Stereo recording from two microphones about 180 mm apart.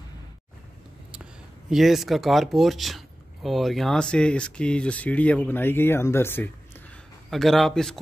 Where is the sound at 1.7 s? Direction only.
Centre (ahead or behind).